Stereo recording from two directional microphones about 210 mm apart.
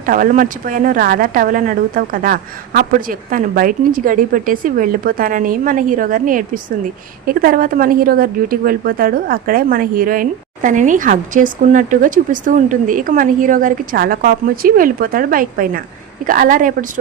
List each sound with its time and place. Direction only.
0.0 s a woman's voice: 40° right (ahead or behind)